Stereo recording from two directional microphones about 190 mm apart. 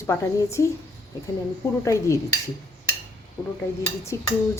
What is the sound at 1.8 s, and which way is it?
Dishes, 15° left (ahead or behind).